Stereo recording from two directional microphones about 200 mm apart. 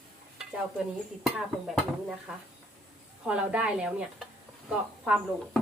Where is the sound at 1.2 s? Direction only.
Centre (ahead or behind).